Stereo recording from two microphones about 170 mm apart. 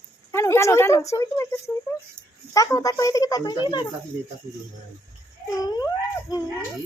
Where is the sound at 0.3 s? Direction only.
15° left (ahead or behind).